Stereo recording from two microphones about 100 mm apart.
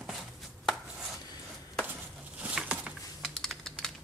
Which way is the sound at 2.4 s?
10° right (ahead or behind).